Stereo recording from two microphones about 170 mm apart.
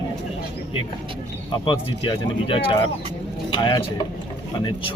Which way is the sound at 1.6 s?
30° left (ahead or behind).